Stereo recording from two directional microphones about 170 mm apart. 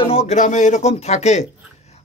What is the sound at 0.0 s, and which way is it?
A man's voice, 35° left (ahead or behind).